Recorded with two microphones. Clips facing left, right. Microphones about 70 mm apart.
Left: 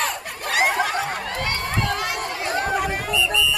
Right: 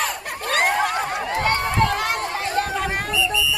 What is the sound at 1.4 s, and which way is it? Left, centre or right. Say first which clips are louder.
Run: right 7 dB; right.